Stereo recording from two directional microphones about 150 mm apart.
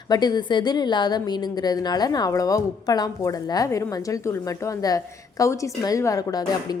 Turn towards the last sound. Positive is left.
turn(degrees=25)  # may be behind; listen again after turning